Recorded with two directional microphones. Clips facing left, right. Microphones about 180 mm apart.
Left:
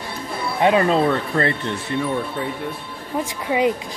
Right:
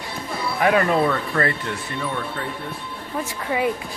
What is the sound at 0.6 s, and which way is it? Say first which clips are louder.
Speech: left 2 dB; 25° left (ahead or behind).